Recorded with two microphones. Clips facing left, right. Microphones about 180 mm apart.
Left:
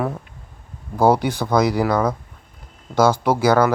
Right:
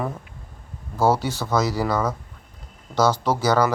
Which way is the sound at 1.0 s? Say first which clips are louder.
Left 4 dB; 15° left (ahead or behind).